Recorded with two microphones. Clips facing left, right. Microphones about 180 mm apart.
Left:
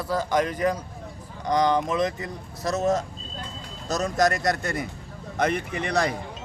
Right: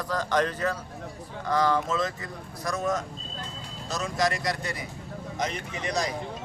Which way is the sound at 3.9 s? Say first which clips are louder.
Left 5 dB; 40° left (ahead or behind).